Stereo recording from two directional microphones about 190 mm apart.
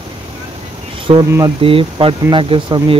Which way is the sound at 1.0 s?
25° right (ahead or behind).